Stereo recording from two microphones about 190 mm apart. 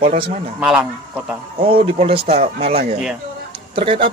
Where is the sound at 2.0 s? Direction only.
30° right (ahead or behind).